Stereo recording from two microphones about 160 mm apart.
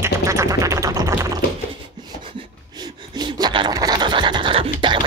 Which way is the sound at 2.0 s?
30° right (ahead or behind).